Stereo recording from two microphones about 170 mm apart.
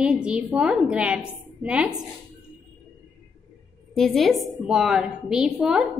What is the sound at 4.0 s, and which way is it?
A woman's voice, centre (ahead or behind).